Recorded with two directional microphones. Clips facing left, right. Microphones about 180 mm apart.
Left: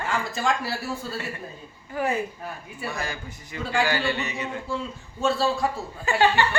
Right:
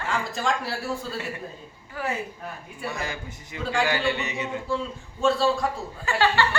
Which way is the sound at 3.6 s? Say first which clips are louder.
Even; centre (ahead or behind).